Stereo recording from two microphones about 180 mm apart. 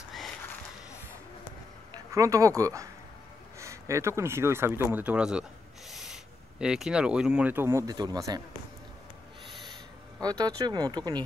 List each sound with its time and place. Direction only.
2.1 s speech: 20° right (ahead or behind)
5.9 s owl: centre (ahead or behind)
6.6 s speech: 5° right (ahead or behind); by 8.4 s 20° right (ahead or behind)
10.2 s speech: 20° right (ahead or behind)